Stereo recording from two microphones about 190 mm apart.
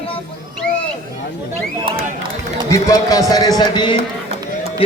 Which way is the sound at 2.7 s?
15° left (ahead or behind).